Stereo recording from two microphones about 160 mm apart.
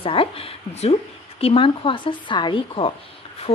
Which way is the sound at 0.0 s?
35° left (ahead or behind).